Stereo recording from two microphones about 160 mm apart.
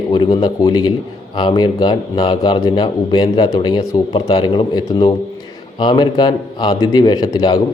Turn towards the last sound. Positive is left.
turn(degrees=25)  # may be behind; listen again after turning